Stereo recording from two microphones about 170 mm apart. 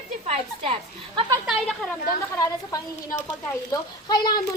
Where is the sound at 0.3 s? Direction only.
35° right (ahead or behind).